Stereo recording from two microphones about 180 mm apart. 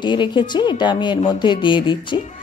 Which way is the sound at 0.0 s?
25° left (ahead or behind).